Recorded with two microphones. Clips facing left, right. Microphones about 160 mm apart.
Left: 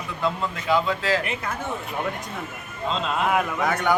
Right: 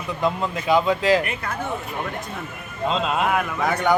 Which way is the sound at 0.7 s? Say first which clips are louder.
Right 4 dB; 15° right (ahead or behind).